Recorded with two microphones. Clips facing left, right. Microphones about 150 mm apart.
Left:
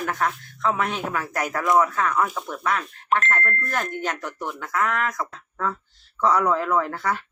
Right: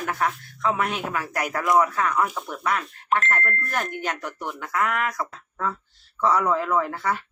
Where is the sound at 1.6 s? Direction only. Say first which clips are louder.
Even; 5° right (ahead or behind).